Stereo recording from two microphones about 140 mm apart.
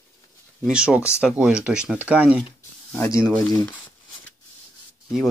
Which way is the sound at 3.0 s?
20° left (ahead or behind).